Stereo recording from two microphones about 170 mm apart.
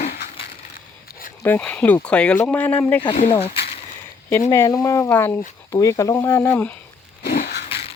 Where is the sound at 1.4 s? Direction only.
10° left (ahead or behind).